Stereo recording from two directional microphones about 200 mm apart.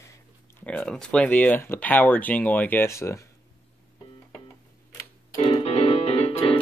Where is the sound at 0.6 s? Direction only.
5° left (ahead or behind).